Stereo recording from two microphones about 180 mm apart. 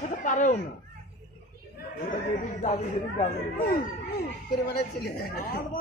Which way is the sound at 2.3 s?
45° left (ahead or behind).